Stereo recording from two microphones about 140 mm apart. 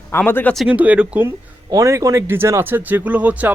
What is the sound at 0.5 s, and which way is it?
Speech, 5° right (ahead or behind).